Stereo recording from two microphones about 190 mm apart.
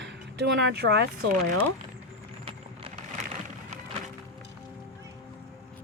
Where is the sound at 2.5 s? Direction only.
30° right (ahead or behind).